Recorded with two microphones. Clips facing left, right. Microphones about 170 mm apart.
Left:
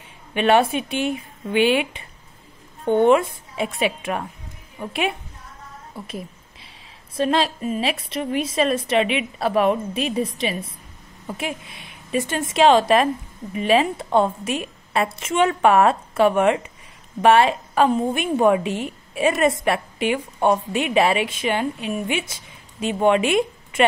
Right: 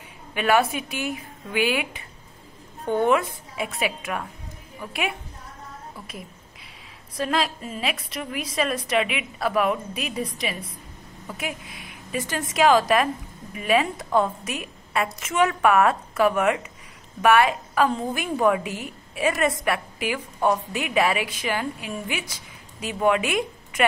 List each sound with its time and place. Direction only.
0.3 s a woman's voice: 25° left (ahead or behind)